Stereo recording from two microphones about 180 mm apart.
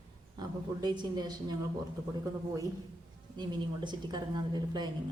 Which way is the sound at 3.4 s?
25° right (ahead or behind).